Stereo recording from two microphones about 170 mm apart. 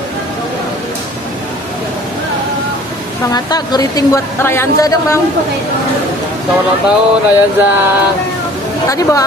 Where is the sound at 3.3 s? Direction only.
25° left (ahead or behind).